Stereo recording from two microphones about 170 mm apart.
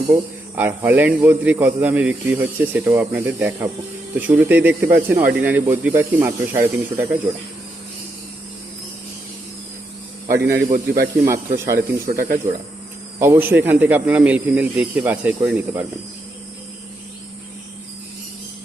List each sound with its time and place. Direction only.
0.1 s a man's voice: 10° right (ahead or behind)
5.2 s speech: 60° right (ahead or behind)
5.5 s a man's voice: 10° right (ahead or behind)
10.2 s speech: 65° right (ahead or behind)
10.7 s speech: 65° right (ahead or behind)
11.3 s a man's voice: 15° right (ahead or behind)
11.8 s speech: 60° right (ahead or behind)
13.1 s a man's voice: 15° right (ahead or behind)